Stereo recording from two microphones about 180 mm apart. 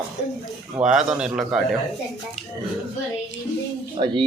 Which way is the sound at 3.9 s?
30° right (ahead or behind).